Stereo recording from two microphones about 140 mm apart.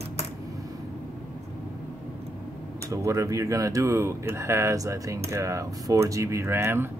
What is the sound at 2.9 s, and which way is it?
Speech, 20° right (ahead or behind).